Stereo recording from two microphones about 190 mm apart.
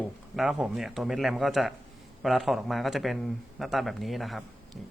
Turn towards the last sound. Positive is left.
turn(degrees=0)  # may be behind; listen again after turning